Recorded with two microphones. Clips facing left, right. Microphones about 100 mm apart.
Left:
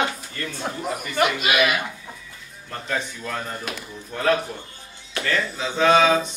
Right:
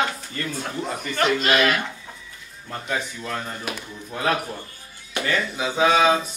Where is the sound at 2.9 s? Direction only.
Centre (ahead or behind).